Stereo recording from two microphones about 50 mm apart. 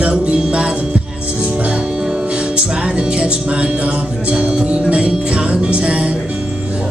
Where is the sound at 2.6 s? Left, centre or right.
Right.